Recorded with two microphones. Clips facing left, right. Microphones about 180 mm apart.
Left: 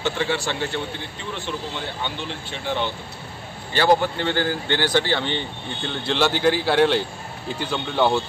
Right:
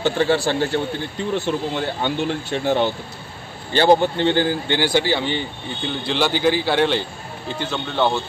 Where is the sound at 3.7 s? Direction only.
25° right (ahead or behind); by 8.2 s 5° left (ahead or behind).